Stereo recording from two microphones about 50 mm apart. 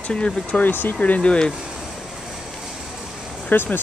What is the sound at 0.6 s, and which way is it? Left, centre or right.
Speech, left.